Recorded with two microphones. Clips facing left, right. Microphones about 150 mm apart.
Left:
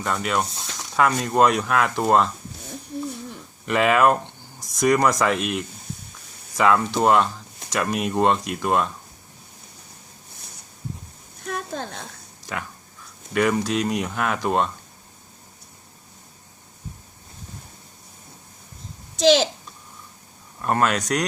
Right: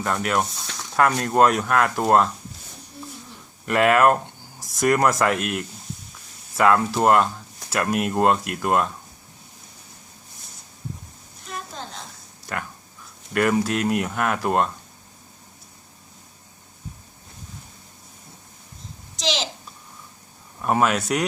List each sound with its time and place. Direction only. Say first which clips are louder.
0.0 s speech: right 1 dB; centre (ahead or behind)
3.7 s speech: right 1 dB; centre (ahead or behind)
11.4 s a sound: left 5 dB; 55° left (ahead or behind)
12.5 s a sound: right 1 dB; centre (ahead or behind)
13.3 s speech: even; centre (ahead or behind)
19.2 s a child's voice: left 11 dB; 50° left (ahead or behind)
20.6 s speech: right 1 dB; 5° right (ahead or behind)